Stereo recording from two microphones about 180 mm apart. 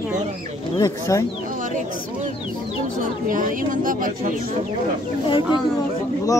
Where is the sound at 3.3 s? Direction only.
50° right (ahead or behind).